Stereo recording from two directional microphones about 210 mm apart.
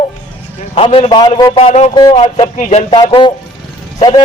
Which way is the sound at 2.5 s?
35° left (ahead or behind).